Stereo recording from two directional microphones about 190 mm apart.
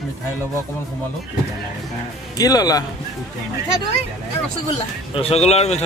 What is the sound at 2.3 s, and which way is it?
Speech, 20° left (ahead or behind).